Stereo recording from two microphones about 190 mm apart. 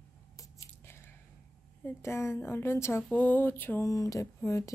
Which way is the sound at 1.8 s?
15° left (ahead or behind).